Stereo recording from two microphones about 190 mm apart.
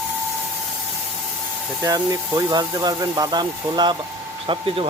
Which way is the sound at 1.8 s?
20° right (ahead or behind).